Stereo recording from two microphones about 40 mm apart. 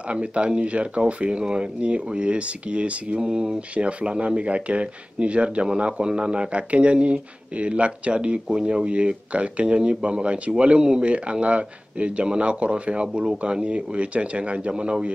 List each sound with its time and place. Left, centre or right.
0.1 s speech: right
3.2 s speech: centre